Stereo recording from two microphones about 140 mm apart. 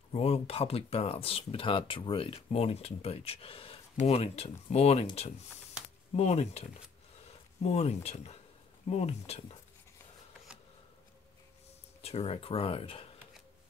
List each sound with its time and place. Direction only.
0.1 s speech: 45° left (ahead or behind)
6.1 s speech: 50° left (ahead or behind)
12.0 s speech: 45° left (ahead or behind)